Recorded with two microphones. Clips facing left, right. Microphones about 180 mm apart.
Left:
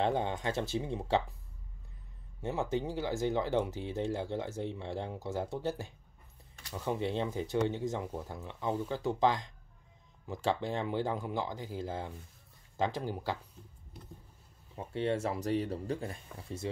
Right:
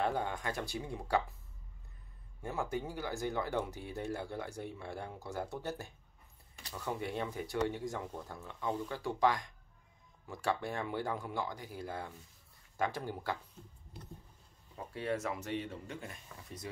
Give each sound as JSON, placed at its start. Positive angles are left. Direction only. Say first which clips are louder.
{"t": 0.0, "sound": "speech", "louder": "left 4 dB", "side_deg": 25}
{"t": 2.4, "sound": "speech", "louder": "left 4 dB", "side_deg": 20}
{"t": 14.8, "sound": "speech", "louder": "left 4 dB", "side_deg": 25}